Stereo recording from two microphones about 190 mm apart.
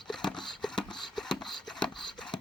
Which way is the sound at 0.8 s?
25° left (ahead or behind).